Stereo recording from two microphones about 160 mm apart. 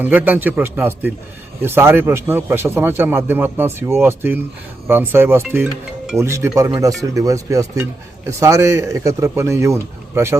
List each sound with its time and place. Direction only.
0.0 s a man's voice: 10° right (ahead or behind)